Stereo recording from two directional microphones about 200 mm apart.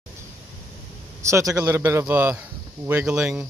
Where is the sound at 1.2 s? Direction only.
15° right (ahead or behind).